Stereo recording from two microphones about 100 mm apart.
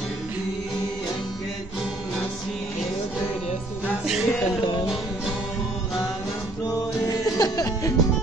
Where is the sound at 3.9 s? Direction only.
5° right (ahead or behind).